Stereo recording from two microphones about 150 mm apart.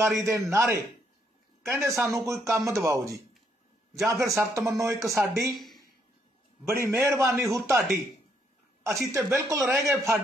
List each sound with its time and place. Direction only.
0.2 s a man's voice: 20° right (ahead or behind)
6.6 s a man's voice: 15° right (ahead or behind)